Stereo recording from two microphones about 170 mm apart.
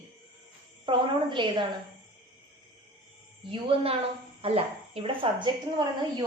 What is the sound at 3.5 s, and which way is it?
A woman's voice, 30° right (ahead or behind).